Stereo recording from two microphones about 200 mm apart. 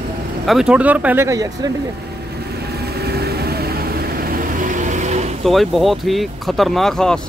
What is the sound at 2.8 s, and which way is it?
Vehicle, 55° right (ahead or behind).